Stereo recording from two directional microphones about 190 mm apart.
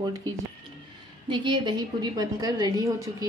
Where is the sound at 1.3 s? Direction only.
25° right (ahead or behind).